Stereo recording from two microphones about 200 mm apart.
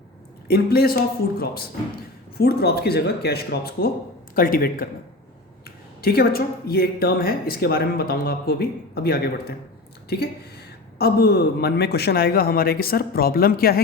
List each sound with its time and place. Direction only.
0.4 s speech: 50° left (ahead or behind)
2.4 s speech: 50° left (ahead or behind)